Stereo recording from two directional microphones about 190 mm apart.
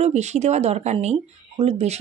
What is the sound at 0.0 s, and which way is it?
Speech, 35° right (ahead or behind).